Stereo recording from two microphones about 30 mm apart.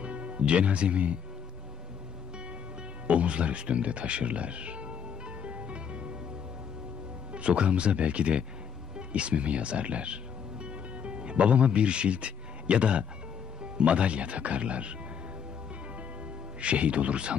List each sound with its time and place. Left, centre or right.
0.0 s speech: right
3.1 s speech: right
5.4 s music: right
7.3 s speech: right
8.9 s music: right
13.7 s speech: right
16.6 s speech: right